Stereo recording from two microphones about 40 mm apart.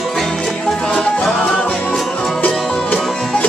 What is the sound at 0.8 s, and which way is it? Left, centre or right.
Music, left.